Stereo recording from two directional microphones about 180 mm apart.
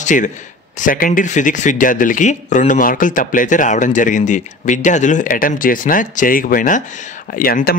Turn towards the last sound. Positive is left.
turn(degrees=55)  # may be behind; listen again after turning